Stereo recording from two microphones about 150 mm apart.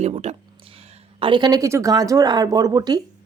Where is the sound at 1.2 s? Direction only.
35° right (ahead or behind).